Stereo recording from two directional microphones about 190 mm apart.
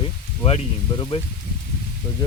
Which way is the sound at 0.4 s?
30° left (ahead or behind).